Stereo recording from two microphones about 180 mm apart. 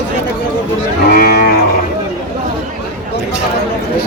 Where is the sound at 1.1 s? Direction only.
60° left (ahead or behind).